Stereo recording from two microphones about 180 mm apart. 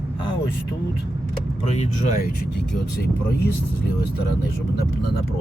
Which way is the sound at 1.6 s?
40° left (ahead or behind).